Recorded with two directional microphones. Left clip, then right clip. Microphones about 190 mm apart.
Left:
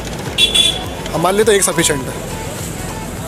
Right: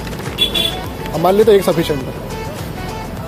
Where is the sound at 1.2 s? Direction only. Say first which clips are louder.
Right 2 dB; 10° right (ahead or behind).